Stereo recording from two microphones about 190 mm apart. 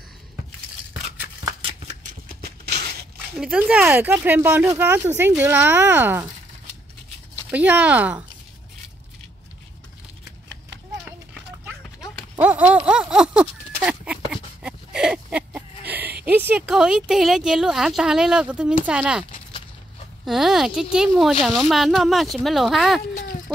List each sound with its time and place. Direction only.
1.4 s shuffling cards: 30° right (ahead or behind)
2.2 s a sound: 55° right (ahead or behind)
3.3 s speech: 5° right (ahead or behind)
7.5 s speech: 5° right (ahead or behind)
12.2 s a sound: 5° right (ahead or behind)
16.3 s speech: 10° right (ahead or behind)
20.2 s speech: centre (ahead or behind)